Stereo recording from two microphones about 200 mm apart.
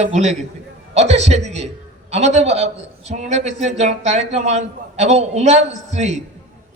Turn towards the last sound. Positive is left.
turn(degrees=-35)  # may be behind; listen again after turning